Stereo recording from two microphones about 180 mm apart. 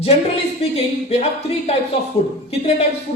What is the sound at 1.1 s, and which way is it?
Speech, 35° left (ahead or behind).